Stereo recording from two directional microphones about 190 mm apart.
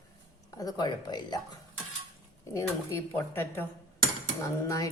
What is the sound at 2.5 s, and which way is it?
Speech, 15° left (ahead or behind).